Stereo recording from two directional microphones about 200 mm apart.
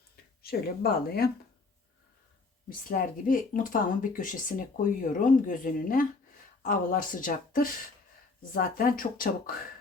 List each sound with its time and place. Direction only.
0.4 s speech: 50° left (ahead or behind)
2.6 s speech: 45° left (ahead or behind)